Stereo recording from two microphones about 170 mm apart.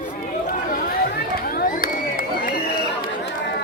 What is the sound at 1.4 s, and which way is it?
Crowd, 60° left (ahead or behind).